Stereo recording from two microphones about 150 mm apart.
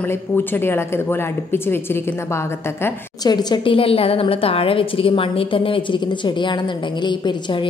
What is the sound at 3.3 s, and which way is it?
A woman's voice, 30° left (ahead or behind).